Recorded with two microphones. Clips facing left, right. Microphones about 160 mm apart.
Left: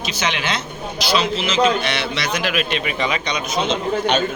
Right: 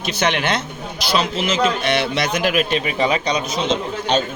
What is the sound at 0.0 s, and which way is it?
A man's voice, 55° right (ahead or behind).